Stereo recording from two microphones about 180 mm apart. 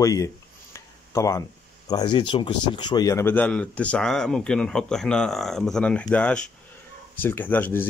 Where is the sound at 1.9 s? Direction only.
25° left (ahead or behind).